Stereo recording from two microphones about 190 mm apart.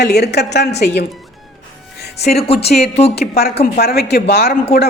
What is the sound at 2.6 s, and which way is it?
A woman's voice, 55° left (ahead or behind).